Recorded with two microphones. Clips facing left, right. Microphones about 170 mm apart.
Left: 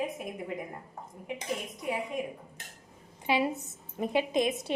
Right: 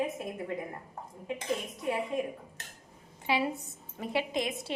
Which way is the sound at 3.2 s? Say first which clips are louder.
Left 2 dB; 20° left (ahead or behind).